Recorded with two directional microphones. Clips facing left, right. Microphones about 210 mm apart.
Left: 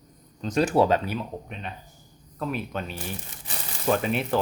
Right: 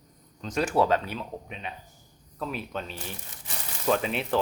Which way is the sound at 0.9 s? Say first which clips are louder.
Left 2 dB; 5° left (ahead or behind).